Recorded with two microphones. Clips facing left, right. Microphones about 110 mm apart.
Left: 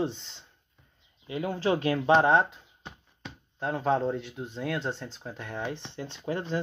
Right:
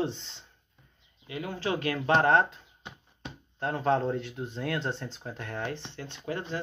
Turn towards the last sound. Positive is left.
turn(degrees=30)  # may be behind; listen again after turning